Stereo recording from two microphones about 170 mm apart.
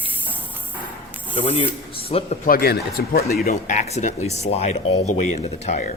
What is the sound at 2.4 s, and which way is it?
A man's voice, 60° left (ahead or behind).